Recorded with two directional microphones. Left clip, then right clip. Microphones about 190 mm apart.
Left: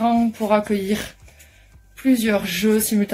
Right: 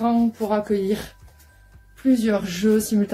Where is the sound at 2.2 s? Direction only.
5° left (ahead or behind).